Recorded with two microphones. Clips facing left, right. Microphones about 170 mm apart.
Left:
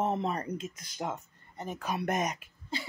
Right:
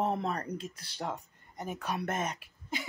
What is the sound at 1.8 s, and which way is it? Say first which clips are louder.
Speech: left 3 dB; 10° left (ahead or behind).